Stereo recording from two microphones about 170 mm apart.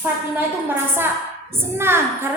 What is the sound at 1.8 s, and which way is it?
Speech, 15° right (ahead or behind).